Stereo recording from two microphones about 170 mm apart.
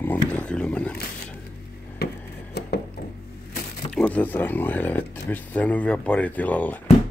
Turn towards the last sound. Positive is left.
turn(degrees=10)  # may be behind; listen again after turning